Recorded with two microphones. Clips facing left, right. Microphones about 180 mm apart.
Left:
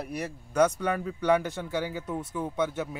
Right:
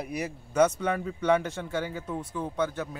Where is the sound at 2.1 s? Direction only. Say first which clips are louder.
Left 1 dB; 20° left (ahead or behind).